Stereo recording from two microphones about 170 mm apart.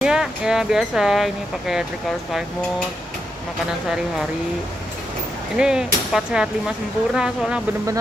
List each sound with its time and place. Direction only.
0.0 s speech: 5° right (ahead or behind)
5.6 s speech: 5° right (ahead or behind)